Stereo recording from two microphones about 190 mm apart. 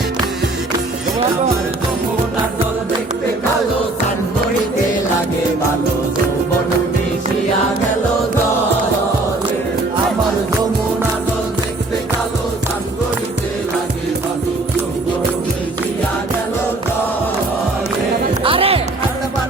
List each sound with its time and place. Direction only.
18.4 s music: 30° right (ahead or behind)